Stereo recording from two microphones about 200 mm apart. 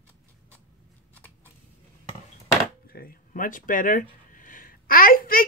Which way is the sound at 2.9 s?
45° left (ahead or behind).